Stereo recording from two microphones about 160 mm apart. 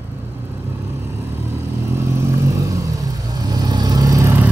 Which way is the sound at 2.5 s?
20° right (ahead or behind).